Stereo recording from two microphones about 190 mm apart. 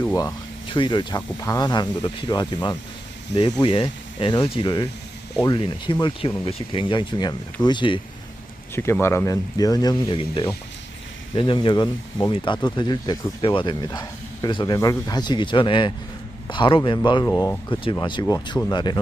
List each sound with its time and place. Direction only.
0.0 s speech: 15° left (ahead or behind)
8.7 s speech: 15° left (ahead or behind)
17.2 s speech: 15° left (ahead or behind)